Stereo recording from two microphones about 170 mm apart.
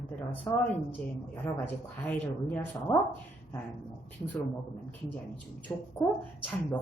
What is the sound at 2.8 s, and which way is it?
Speech, 15° left (ahead or behind).